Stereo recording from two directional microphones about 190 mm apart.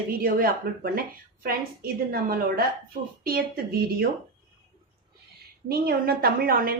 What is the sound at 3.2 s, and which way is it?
Speech, 50° right (ahead or behind).